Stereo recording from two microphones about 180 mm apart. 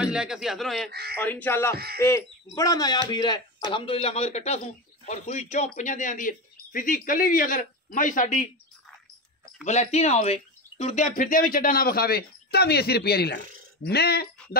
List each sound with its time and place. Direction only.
0.0 s a man's voice: 5° right (ahead or behind); by 8.5 s 45° left (ahead or behind)
9.7 s speech: 40° left (ahead or behind); by 14.3 s 65° left (ahead or behind)